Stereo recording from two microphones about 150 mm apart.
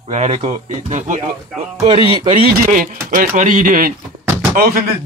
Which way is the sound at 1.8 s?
35° right (ahead or behind).